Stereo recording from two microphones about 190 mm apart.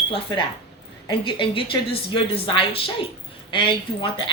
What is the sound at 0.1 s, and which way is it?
Speech, 25° left (ahead or behind).